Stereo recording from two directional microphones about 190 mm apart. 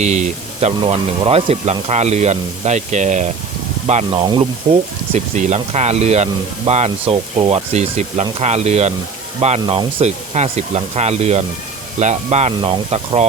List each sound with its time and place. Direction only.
0.0 s speech: 35° right (ahead or behind)
5.1 s speech: 40° right (ahead or behind)